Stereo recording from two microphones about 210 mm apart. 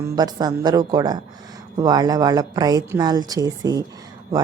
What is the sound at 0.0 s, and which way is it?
A woman's voice, 20° right (ahead or behind).